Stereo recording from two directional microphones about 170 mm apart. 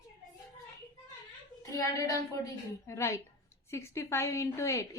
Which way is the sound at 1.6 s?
20° left (ahead or behind).